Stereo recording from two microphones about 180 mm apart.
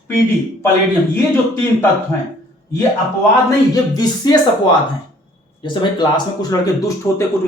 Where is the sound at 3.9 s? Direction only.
25° left (ahead or behind).